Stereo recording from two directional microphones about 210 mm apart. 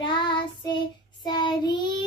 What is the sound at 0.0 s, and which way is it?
Child singing, 20° left (ahead or behind).